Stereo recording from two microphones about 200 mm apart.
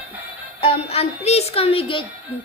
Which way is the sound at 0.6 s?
30° left (ahead or behind).